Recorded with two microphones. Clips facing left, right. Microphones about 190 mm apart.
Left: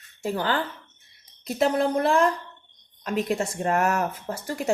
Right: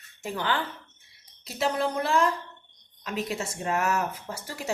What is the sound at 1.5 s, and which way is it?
A woman's voice, 50° left (ahead or behind).